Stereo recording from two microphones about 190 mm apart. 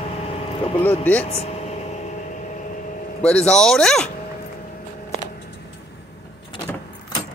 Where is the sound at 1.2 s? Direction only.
30° left (ahead or behind).